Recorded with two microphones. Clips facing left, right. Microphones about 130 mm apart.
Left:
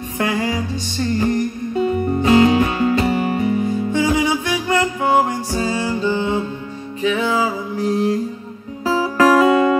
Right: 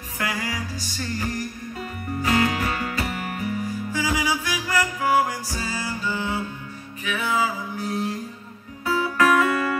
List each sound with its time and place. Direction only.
0.2 s music: 25° left (ahead or behind)